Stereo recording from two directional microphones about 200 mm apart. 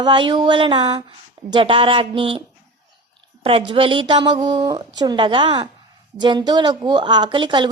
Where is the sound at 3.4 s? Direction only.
25° right (ahead or behind).